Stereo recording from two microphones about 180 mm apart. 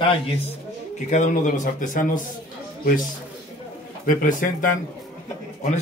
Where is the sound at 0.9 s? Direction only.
40° left (ahead or behind).